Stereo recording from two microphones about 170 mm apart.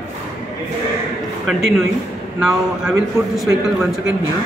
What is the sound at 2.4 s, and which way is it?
Speech, centre (ahead or behind).